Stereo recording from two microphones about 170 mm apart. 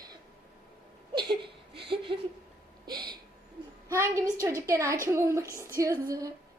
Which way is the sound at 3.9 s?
15° right (ahead or behind).